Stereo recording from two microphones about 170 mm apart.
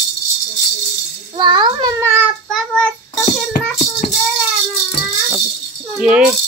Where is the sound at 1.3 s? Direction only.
25° right (ahead or behind).